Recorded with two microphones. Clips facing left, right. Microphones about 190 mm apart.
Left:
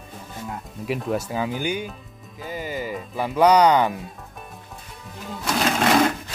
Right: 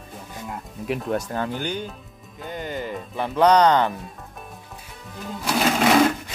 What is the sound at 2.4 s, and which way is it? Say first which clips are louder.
Music: left 1 dB; 5° left (ahead or behind).